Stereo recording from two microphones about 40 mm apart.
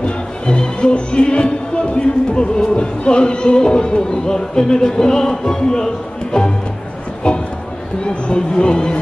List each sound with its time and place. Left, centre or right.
0.0 s music: left
7.2 s a sound: left
8.0 s music: left